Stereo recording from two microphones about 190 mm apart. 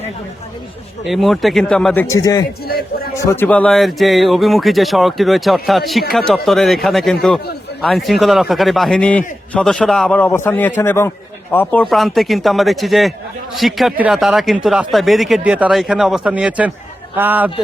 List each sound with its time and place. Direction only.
1.0 s speech: centre (ahead or behind)
2.0 s a man's voice: 15° left (ahead or behind)
2.6 s a man's voice: 50° left (ahead or behind)
3.2 s a man's voice: 10° left (ahead or behind); by 17.5 s 10° right (ahead or behind)